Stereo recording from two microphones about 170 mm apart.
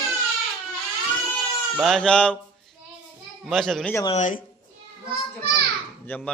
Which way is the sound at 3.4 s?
Centre (ahead or behind).